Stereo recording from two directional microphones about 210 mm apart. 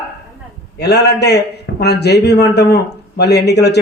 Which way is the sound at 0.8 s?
50° left (ahead or behind).